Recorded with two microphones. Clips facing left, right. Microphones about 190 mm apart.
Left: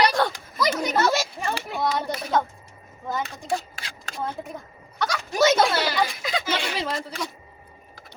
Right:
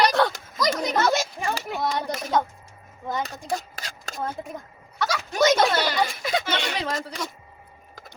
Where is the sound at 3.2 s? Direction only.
40° right (ahead or behind).